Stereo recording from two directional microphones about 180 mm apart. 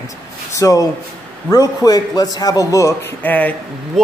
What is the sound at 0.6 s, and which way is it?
A man's voice, 20° left (ahead or behind).